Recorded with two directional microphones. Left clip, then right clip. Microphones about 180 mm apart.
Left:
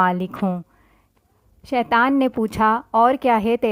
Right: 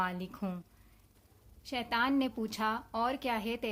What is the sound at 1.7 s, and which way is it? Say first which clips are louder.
Speech: left 14 dB; 45° left (ahead or behind).